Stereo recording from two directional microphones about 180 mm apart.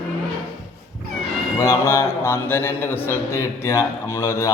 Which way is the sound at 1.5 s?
15° left (ahead or behind).